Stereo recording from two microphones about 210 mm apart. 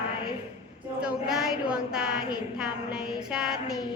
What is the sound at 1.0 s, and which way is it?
A woman's voice, 5° right (ahead or behind).